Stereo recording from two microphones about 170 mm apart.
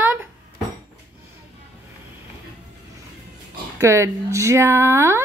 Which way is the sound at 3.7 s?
15° right (ahead or behind).